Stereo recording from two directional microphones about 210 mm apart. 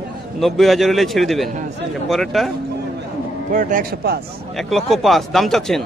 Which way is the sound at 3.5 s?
40° right (ahead or behind).